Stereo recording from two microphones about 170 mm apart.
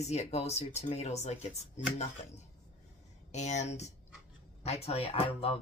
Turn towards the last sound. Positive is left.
turn(degrees=35)  # may be behind; listen again after turning